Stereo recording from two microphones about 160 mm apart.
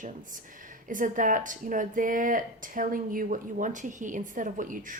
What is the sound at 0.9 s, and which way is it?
A woman's voice, 55° right (ahead or behind).